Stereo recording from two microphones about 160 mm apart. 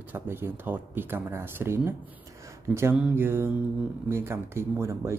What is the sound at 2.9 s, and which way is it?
Speech, 10° right (ahead or behind).